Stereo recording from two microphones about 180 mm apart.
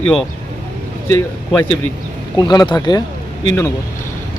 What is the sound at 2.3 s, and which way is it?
Speech, 25° left (ahead or behind).